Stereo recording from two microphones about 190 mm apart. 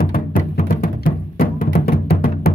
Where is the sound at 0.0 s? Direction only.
50° left (ahead or behind).